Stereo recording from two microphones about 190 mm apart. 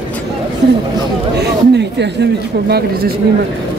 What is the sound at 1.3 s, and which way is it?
Speech, 65° right (ahead or behind).